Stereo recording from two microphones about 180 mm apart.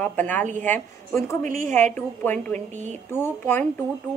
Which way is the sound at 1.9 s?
10° left (ahead or behind).